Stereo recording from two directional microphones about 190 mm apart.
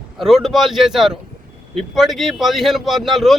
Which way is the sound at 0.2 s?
Centre (ahead or behind).